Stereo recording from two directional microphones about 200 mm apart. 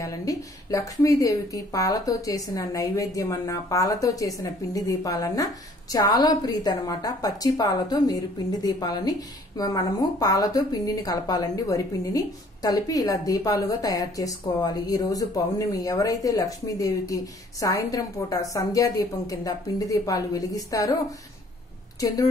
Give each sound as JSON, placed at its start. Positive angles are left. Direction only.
{"t": 0.0, "sound": "a woman's voice", "side_deg": 15}